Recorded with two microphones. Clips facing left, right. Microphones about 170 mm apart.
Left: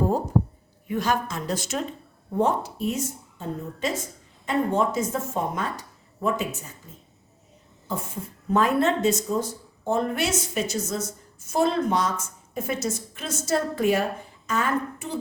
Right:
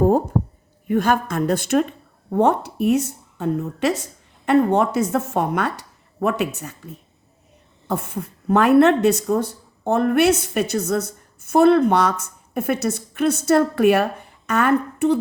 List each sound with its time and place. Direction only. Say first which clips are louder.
0.9 s speech: right 6 dB; 55° right (ahead or behind)